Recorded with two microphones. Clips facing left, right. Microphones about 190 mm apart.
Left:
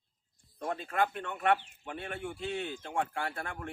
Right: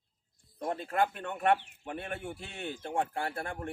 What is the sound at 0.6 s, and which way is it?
Speech, 35° right (ahead or behind).